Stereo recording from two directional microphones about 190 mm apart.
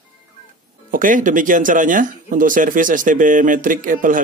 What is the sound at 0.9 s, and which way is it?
Speech, 45° right (ahead or behind).